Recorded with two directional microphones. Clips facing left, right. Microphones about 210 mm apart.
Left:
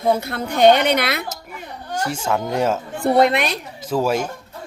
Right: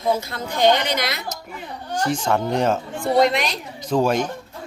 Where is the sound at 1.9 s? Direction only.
10° left (ahead or behind).